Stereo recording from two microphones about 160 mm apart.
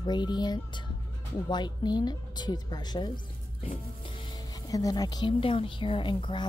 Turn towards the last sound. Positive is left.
turn(degrees=30)  # may be behind; listen again after turning